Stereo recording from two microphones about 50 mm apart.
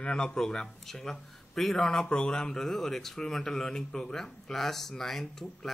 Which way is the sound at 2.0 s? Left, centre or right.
Centre.